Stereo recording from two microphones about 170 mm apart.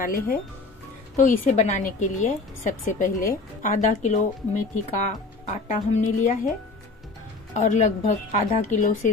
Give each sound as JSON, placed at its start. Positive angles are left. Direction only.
{"t": 0.0, "sound": "a woman's voice", "side_deg": 60}
{"t": 7.5, "sound": "a woman's voice", "side_deg": 45}